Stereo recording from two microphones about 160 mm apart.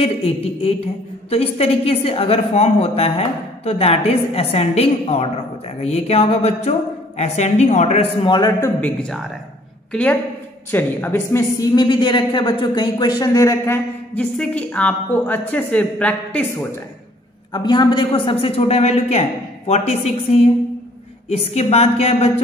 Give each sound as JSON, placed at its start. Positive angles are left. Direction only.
{"t": 0.0, "sound": "a woman's voice", "side_deg": 40}
{"t": 10.7, "sound": "a woman's voice", "side_deg": 10}
{"t": 11.7, "sound": "speech", "side_deg": 30}
{"t": 14.1, "sound": "a woman's voice", "side_deg": 5}
{"t": 17.5, "sound": "a woman's voice", "side_deg": 30}